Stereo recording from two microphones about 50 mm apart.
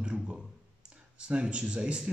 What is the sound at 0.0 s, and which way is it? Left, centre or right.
Clicking, right.